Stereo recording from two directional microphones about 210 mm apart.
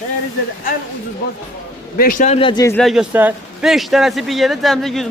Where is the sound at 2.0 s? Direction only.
40° left (ahead or behind); by 2.8 s 20° left (ahead or behind).